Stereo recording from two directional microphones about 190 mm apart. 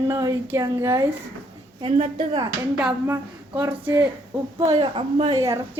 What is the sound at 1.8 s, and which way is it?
Speech, 30° right (ahead or behind).